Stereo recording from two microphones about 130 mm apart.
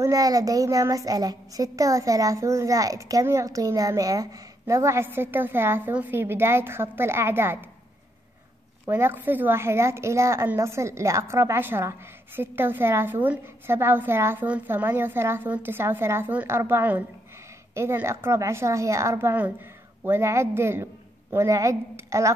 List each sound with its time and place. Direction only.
0.0 s speech: 25° right (ahead or behind)
8.8 s speech: 20° right (ahead or behind)